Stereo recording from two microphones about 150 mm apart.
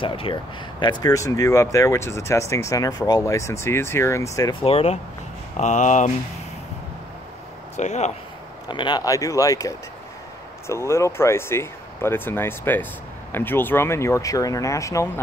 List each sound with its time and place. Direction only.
0.0 s speech: 35° left (ahead or behind)
4.6 s speech: 40° left (ahead or behind)
5.6 s speech: 55° left (ahead or behind)
7.7 s speech: 50° left (ahead or behind)
8.6 s speech: 30° left (ahead or behind)